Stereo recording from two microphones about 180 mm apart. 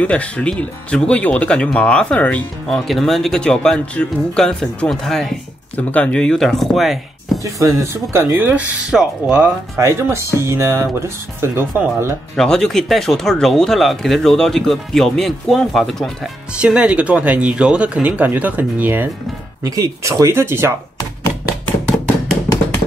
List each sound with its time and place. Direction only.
0.0 s speech: 5° left (ahead or behind)
7.4 s speech: 15° right (ahead or behind)
12.4 s speech: 5° left (ahead or behind); by 20.7 s 15° right (ahead or behind)